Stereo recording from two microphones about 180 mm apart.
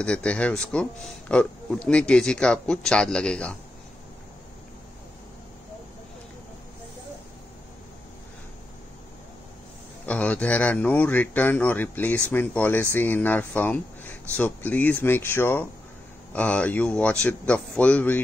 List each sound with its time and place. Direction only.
0.0 s speech: 5° left (ahead or behind)
10.0 s speech: 5° left (ahead or behind)